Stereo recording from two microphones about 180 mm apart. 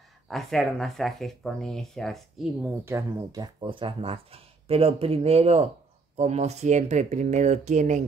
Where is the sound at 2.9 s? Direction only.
15° right (ahead or behind).